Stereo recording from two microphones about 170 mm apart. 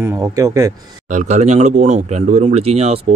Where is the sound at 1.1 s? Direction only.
45° right (ahead or behind).